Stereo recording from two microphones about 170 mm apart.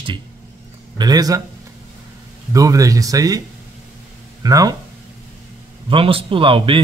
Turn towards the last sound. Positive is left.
turn(degrees=-30)  # may be behind; listen again after turning